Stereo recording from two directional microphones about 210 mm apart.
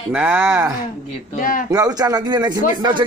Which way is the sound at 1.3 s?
40° left (ahead or behind).